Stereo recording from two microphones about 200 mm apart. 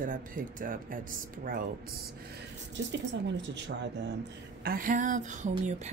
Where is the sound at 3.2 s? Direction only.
60° right (ahead or behind).